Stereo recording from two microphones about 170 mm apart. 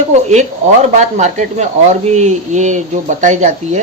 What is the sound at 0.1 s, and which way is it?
Speech, 40° right (ahead or behind).